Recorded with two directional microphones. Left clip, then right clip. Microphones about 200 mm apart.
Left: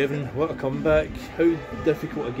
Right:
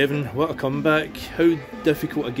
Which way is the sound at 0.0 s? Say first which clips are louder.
Right 3 dB; 45° right (ahead or behind).